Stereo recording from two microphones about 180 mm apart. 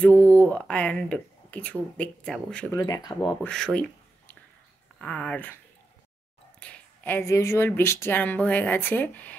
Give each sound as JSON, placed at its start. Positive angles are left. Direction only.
{"t": 0.0, "sound": "speech", "side_deg": 10}
{"t": 2.7, "sound": "speech", "side_deg": 20}
{"t": 3.4, "sound": "a sound", "side_deg": 5}
{"t": 4.9, "sound": "speech", "side_deg": 5}
{"t": 6.6, "sound": "speech", "side_deg": 10}